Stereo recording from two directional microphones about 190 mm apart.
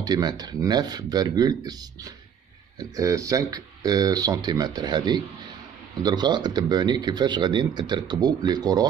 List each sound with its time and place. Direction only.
0.0 s speech: 20° right (ahead or behind)